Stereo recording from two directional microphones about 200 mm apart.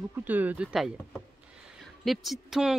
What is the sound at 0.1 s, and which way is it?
Speech, 10° right (ahead or behind).